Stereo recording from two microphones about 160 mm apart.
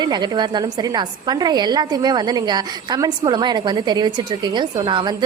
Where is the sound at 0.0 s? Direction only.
25° right (ahead or behind).